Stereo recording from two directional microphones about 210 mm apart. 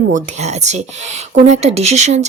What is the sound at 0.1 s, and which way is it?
Speech, 35° right (ahead or behind).